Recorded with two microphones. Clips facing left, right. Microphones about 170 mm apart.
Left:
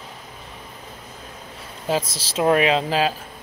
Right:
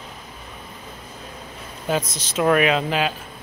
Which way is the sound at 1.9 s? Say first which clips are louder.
Even; 30° left (ahead or behind).